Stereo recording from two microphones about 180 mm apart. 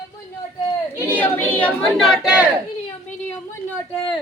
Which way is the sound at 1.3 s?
10° left (ahead or behind).